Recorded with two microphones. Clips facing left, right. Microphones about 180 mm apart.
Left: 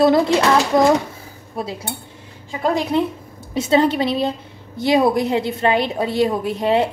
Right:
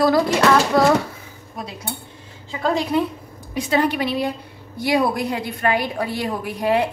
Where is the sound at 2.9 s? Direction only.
25° left (ahead or behind).